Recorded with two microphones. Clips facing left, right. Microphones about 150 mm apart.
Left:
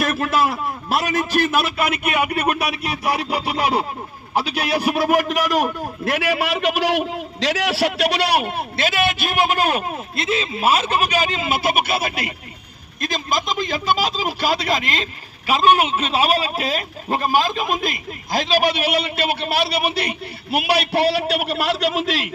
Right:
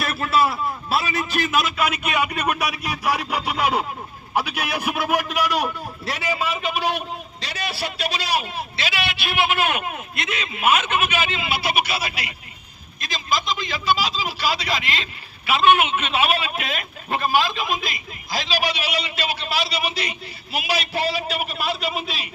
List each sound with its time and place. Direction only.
0.0 s a man's voice: 45° left (ahead or behind)
3.2 s speech: 30° left (ahead or behind)
6.1 s a man's voice: 60° left (ahead or behind); by 22.3 s 90° left